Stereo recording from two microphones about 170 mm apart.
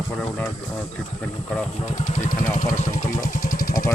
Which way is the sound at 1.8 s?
45° left (ahead or behind).